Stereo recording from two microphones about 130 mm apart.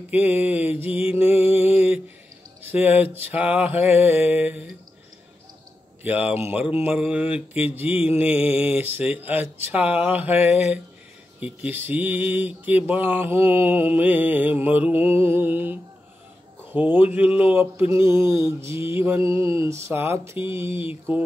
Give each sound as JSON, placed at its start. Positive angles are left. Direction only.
{"t": 0.1, "sound": "mantra", "side_deg": -10}
{"t": 1.3, "sound": "music", "side_deg": 50}
{"t": 1.6, "sound": "a sound", "side_deg": -10}
{"t": 2.6, "sound": "mantra", "side_deg": -15}
{"t": 6.0, "sound": "mantra", "side_deg": -10}